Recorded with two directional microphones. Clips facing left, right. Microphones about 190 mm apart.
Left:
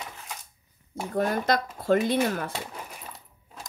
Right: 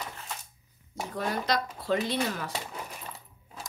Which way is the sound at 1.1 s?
50° left (ahead or behind).